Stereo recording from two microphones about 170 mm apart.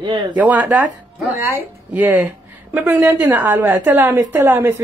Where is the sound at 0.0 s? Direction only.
30° right (ahead or behind).